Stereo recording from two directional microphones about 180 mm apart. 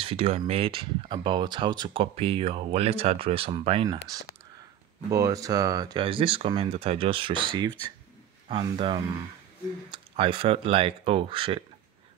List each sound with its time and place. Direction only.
0.0 s speech: 35° right (ahead or behind)